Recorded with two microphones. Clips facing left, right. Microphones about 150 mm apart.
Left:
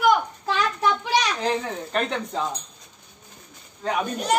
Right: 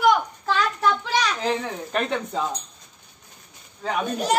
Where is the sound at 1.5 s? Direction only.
Centre (ahead or behind).